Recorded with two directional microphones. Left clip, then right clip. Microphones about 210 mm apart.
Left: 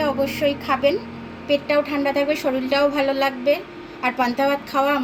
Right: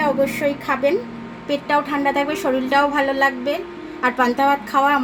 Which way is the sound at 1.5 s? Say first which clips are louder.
Even; 40° right (ahead or behind).